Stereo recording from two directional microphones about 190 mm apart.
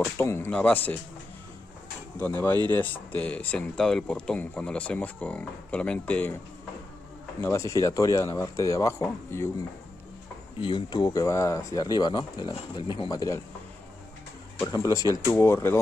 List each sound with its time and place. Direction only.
0.2 s speech: 15° left (ahead or behind)
2.1 s speech: 10° left (ahead or behind)
7.4 s speech: 15° left (ahead or behind)
10.6 s speech: 25° left (ahead or behind)
14.7 s speech: 20° left (ahead or behind)